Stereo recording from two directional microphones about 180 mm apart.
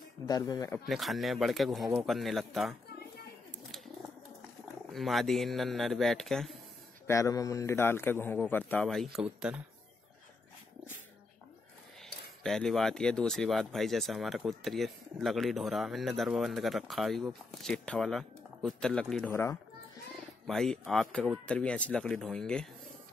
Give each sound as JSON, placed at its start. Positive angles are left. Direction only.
{"t": 0.3, "sound": "speech", "side_deg": 20}
{"t": 0.8, "sound": "speech", "side_deg": 0}
{"t": 4.9, "sound": "speech", "side_deg": 0}
{"t": 7.1, "sound": "a man's voice", "side_deg": 15}
{"t": 12.4, "sound": "speech", "side_deg": 0}
{"t": 19.3, "sound": "a man's voice", "side_deg": 15}
{"t": 20.4, "sound": "speech", "side_deg": 5}